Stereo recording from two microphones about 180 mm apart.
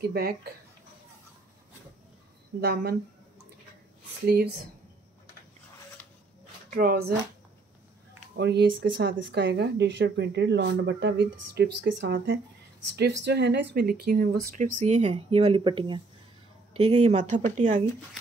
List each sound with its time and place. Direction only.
0.0 s speech: 60° right (ahead or behind)
2.6 s speech: 60° right (ahead or behind)
6.0 s a sound: 10° left (ahead or behind)
6.7 s speech: 55° right (ahead or behind)
8.4 s speech: 70° right (ahead or behind); by 17.8 s 45° right (ahead or behind)